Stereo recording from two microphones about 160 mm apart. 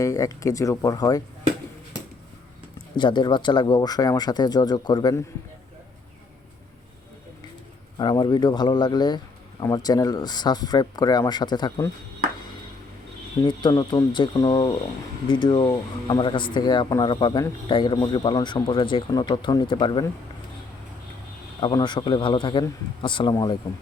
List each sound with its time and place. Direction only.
0.0 s speech: 20° left (ahead or behind)
2.9 s speech: 30° left (ahead or behind)
7.9 s speech: 25° left (ahead or behind)
13.4 s a man's voice: 25° left (ahead or behind)
21.6 s a man's voice: 25° left (ahead or behind)